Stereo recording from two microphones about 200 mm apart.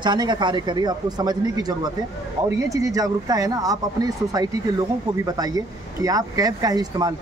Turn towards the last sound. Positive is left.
turn(degrees=-20)  # may be behind; listen again after turning